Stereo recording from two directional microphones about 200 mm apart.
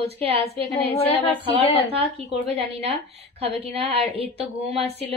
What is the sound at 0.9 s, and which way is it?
Speech, 30° left (ahead or behind).